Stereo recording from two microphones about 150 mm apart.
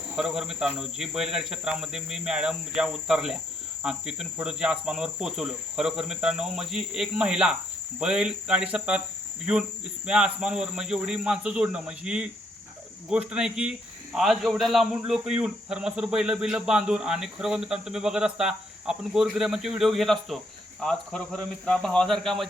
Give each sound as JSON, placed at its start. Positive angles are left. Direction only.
{"t": 0.2, "sound": "cricket", "side_deg": -5}
{"t": 10.1, "sound": "cricket", "side_deg": -5}